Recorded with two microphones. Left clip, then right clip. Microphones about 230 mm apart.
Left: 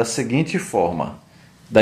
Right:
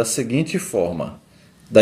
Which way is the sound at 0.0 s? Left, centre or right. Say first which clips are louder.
Even; centre.